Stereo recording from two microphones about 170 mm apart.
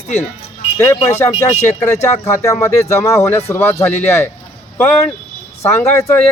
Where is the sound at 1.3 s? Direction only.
40° left (ahead or behind).